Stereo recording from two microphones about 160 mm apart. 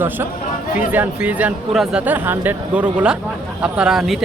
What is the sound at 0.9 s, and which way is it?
Speech, 10° right (ahead or behind).